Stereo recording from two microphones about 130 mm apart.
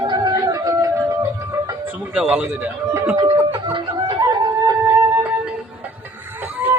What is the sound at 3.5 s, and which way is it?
Music, 40° right (ahead or behind).